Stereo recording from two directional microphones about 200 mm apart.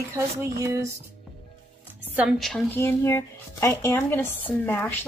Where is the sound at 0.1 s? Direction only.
15° right (ahead or behind).